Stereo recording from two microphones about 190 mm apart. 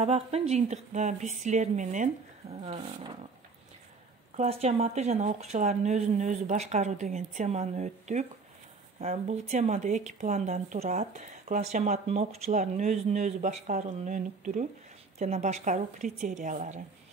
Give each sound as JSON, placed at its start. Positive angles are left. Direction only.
{"t": 0.0, "sound": "speech", "side_deg": -35}
{"t": 4.4, "sound": "speech", "side_deg": -35}